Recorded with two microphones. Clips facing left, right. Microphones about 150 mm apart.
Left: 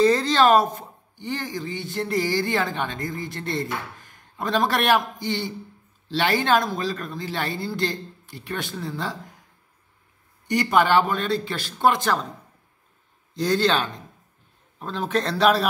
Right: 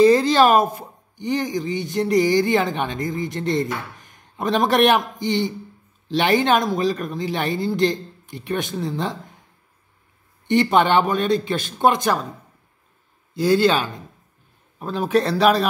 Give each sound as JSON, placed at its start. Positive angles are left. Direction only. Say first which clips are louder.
{"t": 0.0, "sound": "speech", "louder": "right 4 dB", "side_deg": -10}
{"t": 10.4, "sound": "speech", "louder": "right 3 dB", "side_deg": -25}
{"t": 13.3, "sound": "speech", "louder": "right 4 dB", "side_deg": -5}